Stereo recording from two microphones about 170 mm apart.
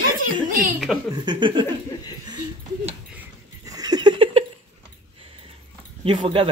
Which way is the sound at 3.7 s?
25° right (ahead or behind).